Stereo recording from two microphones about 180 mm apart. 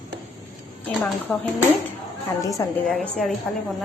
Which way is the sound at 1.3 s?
10° left (ahead or behind).